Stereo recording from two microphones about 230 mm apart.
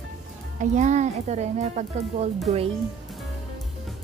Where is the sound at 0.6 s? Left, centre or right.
Right.